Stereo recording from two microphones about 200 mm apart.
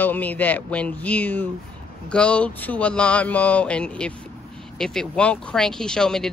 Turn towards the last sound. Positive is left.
turn(degrees=5)  # may be behind; listen again after turning